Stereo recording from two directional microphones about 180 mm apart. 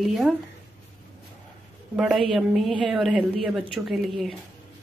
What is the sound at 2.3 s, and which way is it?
Speech, centre (ahead or behind).